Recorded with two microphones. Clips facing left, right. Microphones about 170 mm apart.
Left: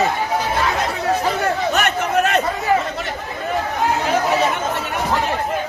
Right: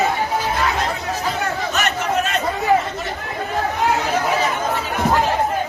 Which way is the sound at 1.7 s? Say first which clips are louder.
Left 2 dB; 60° left (ahead or behind).